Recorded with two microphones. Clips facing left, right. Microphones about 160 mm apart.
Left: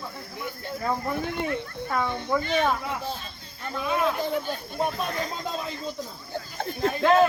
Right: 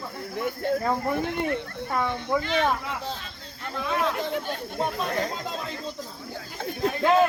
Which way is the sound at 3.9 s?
5° left (ahead or behind).